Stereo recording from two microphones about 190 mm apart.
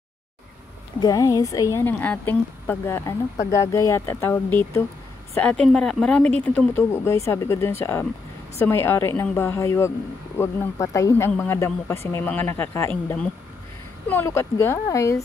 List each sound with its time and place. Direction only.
1.0 s a woman's voice: 20° left (ahead or behind)